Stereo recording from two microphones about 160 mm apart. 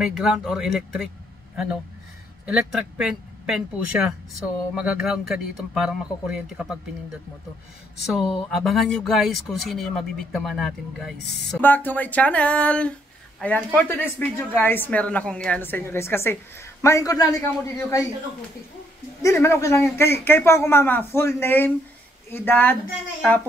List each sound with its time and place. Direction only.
0.0 s speech: 5° right (ahead or behind)
2.4 s speech: 5° right (ahead or behind)
8.1 s a woman's voice: centre (ahead or behind); by 18.0 s 20° left (ahead or behind)
19.2 s a woman's voice: 15° left (ahead or behind)